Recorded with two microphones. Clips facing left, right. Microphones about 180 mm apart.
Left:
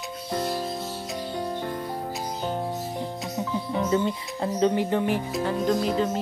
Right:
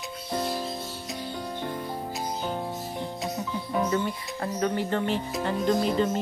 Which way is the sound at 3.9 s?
20° left (ahead or behind).